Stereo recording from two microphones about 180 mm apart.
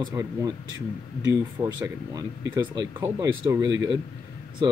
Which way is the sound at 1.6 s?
15° right (ahead or behind).